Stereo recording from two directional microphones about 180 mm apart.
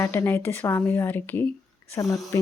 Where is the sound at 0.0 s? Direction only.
15° left (ahead or behind).